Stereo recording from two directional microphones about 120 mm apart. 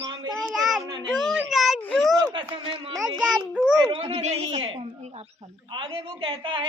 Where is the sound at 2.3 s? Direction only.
45° right (ahead or behind).